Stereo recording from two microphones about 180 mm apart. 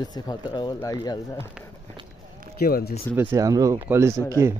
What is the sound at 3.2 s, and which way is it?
Speech, 15° right (ahead or behind).